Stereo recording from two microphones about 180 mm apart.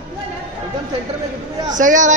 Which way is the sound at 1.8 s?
45° right (ahead or behind).